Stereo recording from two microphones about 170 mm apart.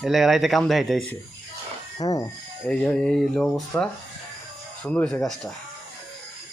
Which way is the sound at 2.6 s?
5° left (ahead or behind).